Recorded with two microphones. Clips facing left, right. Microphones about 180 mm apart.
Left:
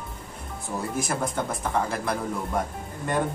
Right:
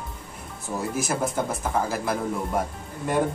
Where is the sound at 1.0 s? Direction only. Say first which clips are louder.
Right 2 dB; 5° right (ahead or behind).